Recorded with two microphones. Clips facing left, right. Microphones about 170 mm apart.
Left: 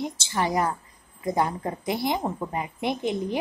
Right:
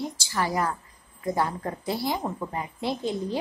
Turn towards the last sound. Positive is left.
turn(degrees=20)  # may be behind; listen again after turning